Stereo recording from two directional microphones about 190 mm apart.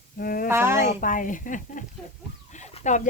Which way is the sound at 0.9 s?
45° left (ahead or behind).